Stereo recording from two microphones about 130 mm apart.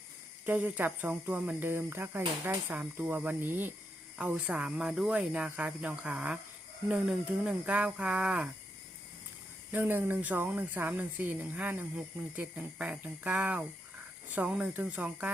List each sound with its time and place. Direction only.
0.4 s speech: 15° right (ahead or behind)
9.7 s speech: 15° right (ahead or behind)